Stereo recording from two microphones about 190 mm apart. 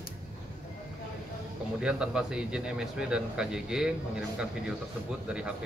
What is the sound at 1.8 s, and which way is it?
Speech, 5° right (ahead or behind).